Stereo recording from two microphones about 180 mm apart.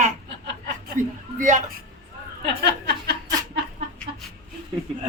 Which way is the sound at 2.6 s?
65° right (ahead or behind).